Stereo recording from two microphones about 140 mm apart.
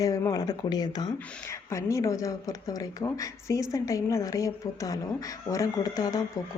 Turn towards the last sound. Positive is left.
turn(degrees=25)  # may be behind; listen again after turning